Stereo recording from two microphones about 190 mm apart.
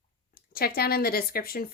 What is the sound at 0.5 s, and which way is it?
Speech, 55° left (ahead or behind).